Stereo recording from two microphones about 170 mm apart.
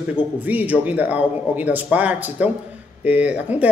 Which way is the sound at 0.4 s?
10° right (ahead or behind).